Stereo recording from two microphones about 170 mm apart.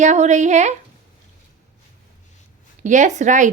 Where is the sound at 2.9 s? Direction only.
45° right (ahead or behind).